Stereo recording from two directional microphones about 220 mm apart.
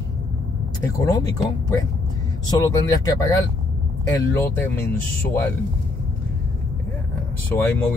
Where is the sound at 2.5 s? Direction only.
15° left (ahead or behind).